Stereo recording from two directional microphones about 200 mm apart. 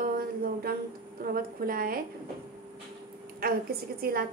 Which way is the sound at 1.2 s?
45° right (ahead or behind).